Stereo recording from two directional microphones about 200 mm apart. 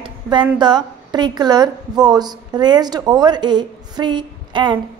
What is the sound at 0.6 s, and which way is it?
A woman's voice, 20° right (ahead or behind).